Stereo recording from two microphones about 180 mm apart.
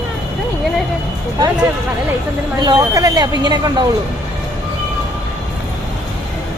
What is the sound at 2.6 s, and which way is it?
Speech, 20° right (ahead or behind).